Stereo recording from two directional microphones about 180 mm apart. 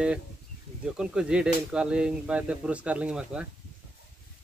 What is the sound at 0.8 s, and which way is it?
Speech, 5° right (ahead or behind).